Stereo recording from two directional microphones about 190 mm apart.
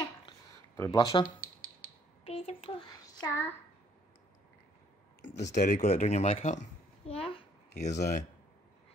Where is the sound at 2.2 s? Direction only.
30° left (ahead or behind).